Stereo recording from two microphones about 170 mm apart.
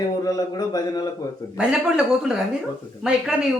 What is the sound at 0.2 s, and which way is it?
Speech, 20° left (ahead or behind).